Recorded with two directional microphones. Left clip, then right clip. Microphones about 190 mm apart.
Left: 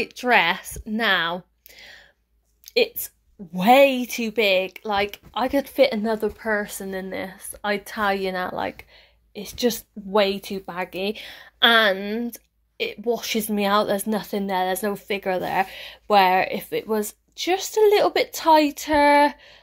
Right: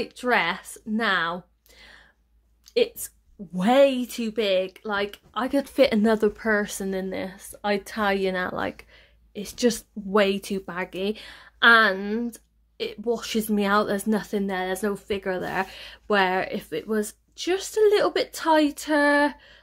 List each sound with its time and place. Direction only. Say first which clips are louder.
0.0 s speech: left 4 dB; centre (ahead or behind)
2.6 s a sound: left 2 dB; 5° right (ahead or behind)
3.5 s a woman's voice: left 4 dB; centre (ahead or behind)
5.7 s a woman's voice: right 2 dB; 30° right (ahead or behind); by 19.6 s 5° right (ahead or behind)